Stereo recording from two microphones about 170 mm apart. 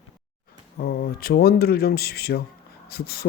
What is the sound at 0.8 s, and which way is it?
Speech, 60° left (ahead or behind).